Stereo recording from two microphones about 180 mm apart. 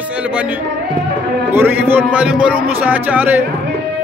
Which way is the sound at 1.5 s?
10° right (ahead or behind).